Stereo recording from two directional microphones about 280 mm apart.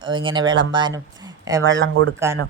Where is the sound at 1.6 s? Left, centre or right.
Right.